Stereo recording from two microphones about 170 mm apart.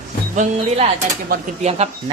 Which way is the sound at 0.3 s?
40° right (ahead or behind).